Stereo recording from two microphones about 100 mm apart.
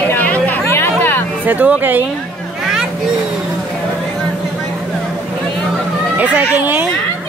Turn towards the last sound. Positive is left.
turn(degrees=-15)  # may be behind; listen again after turning